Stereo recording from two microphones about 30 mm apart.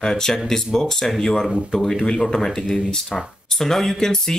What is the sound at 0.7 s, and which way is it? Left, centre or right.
Speech, centre.